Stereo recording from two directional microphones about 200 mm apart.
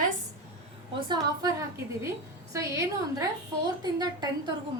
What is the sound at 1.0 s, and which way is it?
A woman's voice, 20° right (ahead or behind).